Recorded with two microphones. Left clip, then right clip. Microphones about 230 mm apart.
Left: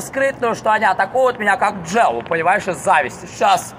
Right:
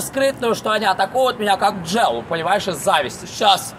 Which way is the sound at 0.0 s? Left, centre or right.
Centre.